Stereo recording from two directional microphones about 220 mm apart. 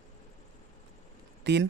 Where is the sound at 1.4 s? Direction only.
50° right (ahead or behind).